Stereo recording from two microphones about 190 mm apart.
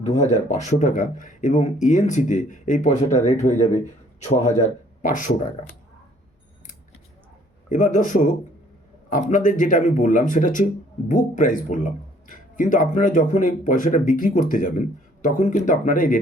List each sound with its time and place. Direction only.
0.0 s speech: 35° left (ahead or behind)
7.7 s speech: 40° left (ahead or behind)